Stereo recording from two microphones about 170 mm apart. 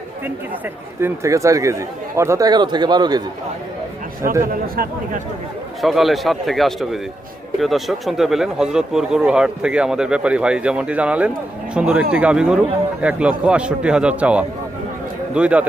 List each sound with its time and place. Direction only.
1.0 s speech: 15° right (ahead or behind)
4.6 s a man's voice: 60° right (ahead or behind)
5.8 s a man's voice: centre (ahead or behind)